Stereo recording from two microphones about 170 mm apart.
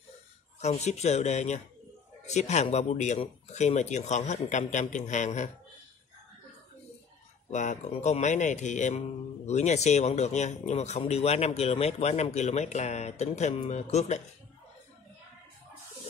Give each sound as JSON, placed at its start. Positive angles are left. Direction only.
{"t": 0.6, "sound": "speech", "side_deg": 40}
{"t": 7.5, "sound": "speech", "side_deg": 45}